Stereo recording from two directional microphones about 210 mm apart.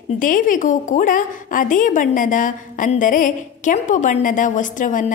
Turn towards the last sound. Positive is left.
turn(degrees=40)  # may be behind; listen again after turning